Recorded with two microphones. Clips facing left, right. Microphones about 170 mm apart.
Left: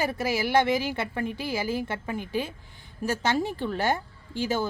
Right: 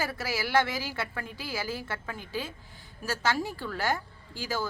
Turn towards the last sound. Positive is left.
turn(degrees=20)  # may be behind; listen again after turning